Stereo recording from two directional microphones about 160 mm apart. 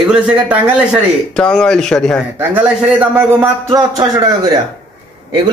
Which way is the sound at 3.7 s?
20° right (ahead or behind).